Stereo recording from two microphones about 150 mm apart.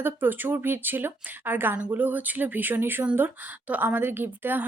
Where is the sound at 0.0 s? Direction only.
10° right (ahead or behind).